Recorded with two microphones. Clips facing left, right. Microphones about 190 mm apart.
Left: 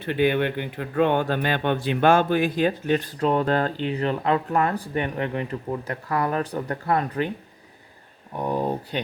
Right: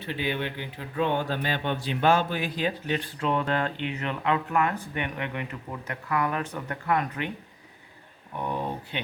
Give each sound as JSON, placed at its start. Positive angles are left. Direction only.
{"t": 0.0, "sound": "speech", "side_deg": 55}
{"t": 8.4, "sound": "speech", "side_deg": 35}